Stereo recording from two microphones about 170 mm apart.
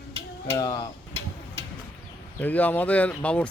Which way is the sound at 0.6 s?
20° left (ahead or behind).